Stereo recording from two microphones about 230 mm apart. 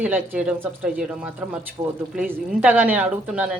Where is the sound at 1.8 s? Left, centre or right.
Centre.